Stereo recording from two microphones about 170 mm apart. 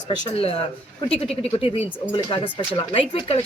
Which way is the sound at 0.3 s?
35° left (ahead or behind).